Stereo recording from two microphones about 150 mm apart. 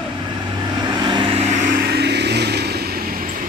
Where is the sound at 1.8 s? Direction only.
90° right.